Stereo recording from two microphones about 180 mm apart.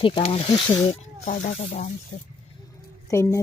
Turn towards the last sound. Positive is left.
turn(degrees=15)  # may be behind; listen again after turning